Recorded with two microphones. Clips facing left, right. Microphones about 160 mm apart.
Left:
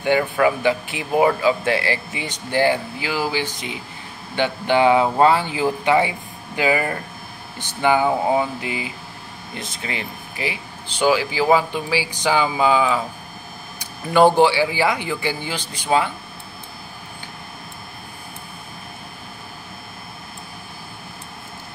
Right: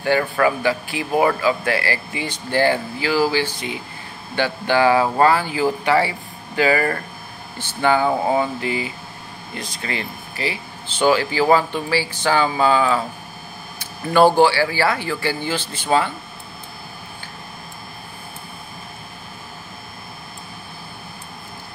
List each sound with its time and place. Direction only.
0.0 s speech: 15° left (ahead or behind)